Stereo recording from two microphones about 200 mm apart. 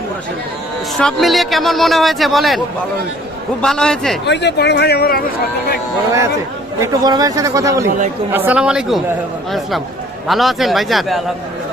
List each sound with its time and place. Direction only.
0.9 s speech: centre (ahead or behind)
3.6 s speech: 5° left (ahead or behind)
4.3 s speech: 60° left (ahead or behind)
6.7 s speech: 15° right (ahead or behind); by 11.2 s centre (ahead or behind)